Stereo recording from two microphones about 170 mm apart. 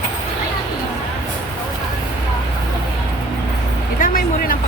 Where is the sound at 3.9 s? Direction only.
55° left (ahead or behind).